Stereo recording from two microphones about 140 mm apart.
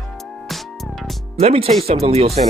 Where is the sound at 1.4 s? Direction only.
45° right (ahead or behind).